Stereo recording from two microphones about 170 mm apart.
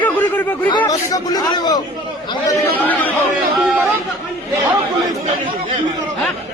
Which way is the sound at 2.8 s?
10° left (ahead or behind).